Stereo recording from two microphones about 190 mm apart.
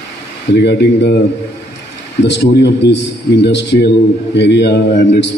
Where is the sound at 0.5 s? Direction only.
65° left (ahead or behind).